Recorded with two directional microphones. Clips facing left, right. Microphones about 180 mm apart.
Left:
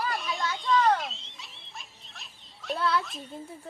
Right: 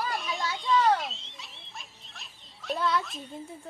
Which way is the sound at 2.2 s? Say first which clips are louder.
Even; centre (ahead or behind).